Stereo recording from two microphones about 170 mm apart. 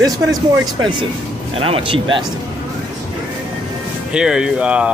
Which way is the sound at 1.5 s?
30° right (ahead or behind).